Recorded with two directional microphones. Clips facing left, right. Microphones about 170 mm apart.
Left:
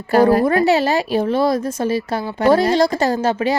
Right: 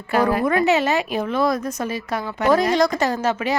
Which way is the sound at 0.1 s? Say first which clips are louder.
Left 5 dB; 35° left (ahead or behind).